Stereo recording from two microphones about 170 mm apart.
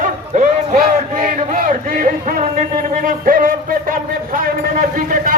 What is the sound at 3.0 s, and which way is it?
Music, 55° right (ahead or behind).